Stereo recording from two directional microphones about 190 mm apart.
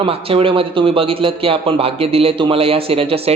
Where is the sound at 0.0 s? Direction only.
30° right (ahead or behind).